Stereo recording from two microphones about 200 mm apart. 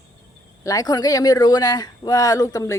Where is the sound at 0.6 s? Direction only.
15° left (ahead or behind).